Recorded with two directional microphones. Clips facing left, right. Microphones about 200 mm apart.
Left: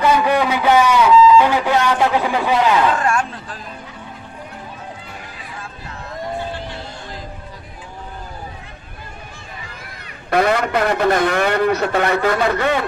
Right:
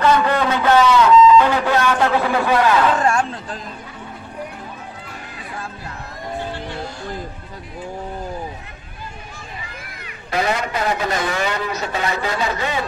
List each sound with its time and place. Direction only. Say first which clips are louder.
0.0 s a sound: left 1 dB; 10° left (ahead or behind)
3.0 s speech: right 1 dB; 30° right (ahead or behind)
10.3 s a man's voice: left 5 dB; 55° left (ahead or behind)